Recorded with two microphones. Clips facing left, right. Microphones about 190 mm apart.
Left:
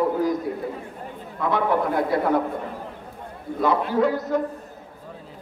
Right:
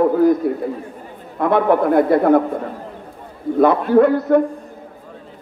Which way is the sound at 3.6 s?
55° right (ahead or behind).